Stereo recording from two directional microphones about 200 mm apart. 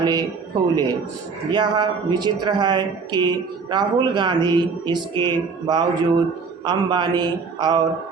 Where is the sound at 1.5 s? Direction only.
20° right (ahead or behind).